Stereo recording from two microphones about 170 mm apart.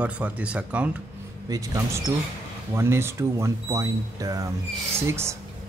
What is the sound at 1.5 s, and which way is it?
Speech, 20° right (ahead or behind).